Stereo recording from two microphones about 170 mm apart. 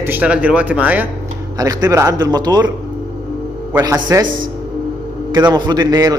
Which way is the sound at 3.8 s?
25° right (ahead or behind).